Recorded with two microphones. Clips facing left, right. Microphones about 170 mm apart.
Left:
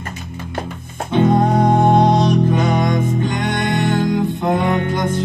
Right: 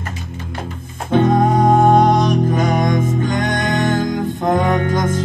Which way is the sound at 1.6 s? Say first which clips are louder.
Right 3 dB; 45° right (ahead or behind).